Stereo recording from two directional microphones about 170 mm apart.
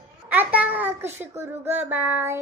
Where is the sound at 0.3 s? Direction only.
10° right (ahead or behind).